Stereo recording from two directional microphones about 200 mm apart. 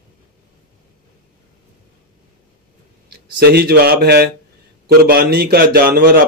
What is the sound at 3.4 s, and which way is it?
A man's voice, 50° right (ahead or behind).